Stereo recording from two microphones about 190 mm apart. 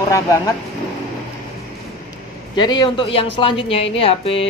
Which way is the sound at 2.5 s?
20° left (ahead or behind).